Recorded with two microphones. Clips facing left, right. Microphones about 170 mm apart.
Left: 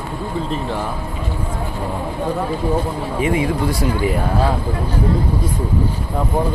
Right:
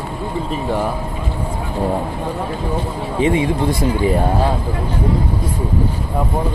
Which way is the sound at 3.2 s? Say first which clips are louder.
Right 3 dB; 25° right (ahead or behind).